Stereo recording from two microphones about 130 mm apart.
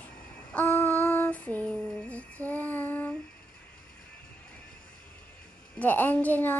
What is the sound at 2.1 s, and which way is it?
Child singing, 10° left (ahead or behind).